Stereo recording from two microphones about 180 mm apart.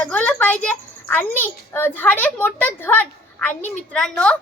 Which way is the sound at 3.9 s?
5° left (ahead or behind).